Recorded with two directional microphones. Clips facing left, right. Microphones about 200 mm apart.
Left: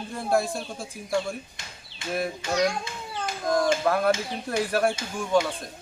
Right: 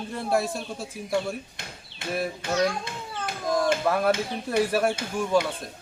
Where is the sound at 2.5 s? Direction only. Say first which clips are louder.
Even; 15° left (ahead or behind).